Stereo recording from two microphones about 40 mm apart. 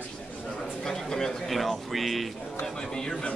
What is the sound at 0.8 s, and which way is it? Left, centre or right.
Speech, centre.